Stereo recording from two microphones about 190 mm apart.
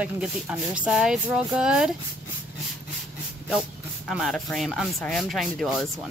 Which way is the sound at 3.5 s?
5° right (ahead or behind).